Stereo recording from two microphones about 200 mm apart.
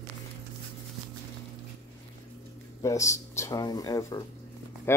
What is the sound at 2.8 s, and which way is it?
Speech, 15° left (ahead or behind).